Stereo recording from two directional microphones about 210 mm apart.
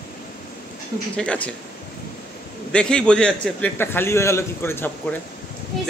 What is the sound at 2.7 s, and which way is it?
A man's voice, 5° left (ahead or behind).